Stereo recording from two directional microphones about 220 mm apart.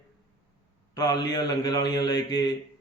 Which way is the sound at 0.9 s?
15° left (ahead or behind).